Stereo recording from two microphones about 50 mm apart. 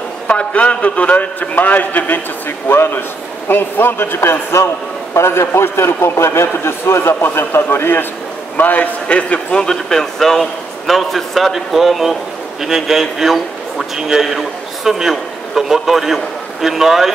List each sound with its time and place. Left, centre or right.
0.3 s a man's voice: left
2.7 s a man's voice: left
7.2 s a man's voice: left
8.5 s a man's voice: left
9.0 s a man's voice: left
9.6 s a man's voice: centre